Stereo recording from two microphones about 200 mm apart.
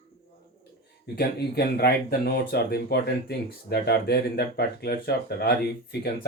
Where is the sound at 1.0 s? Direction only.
55° left (ahead or behind).